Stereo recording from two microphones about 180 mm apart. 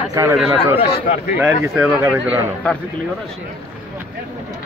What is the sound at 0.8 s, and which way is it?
Speech, 60° left (ahead or behind).